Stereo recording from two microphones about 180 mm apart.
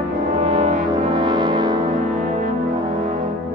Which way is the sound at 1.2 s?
25° right (ahead or behind).